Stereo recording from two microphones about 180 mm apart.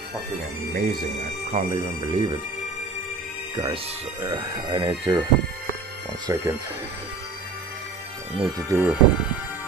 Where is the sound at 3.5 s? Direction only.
25° right (ahead or behind).